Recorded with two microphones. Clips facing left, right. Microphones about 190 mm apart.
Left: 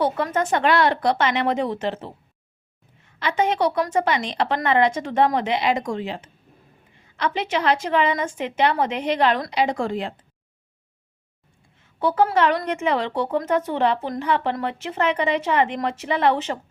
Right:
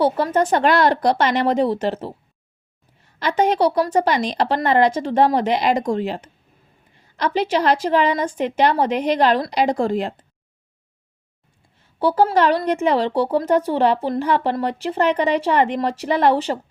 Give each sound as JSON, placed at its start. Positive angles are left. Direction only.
{"t": 0.0, "sound": "speech", "side_deg": -35}
{"t": 3.2, "sound": "speech", "side_deg": -40}
{"t": 11.9, "sound": "speech", "side_deg": -35}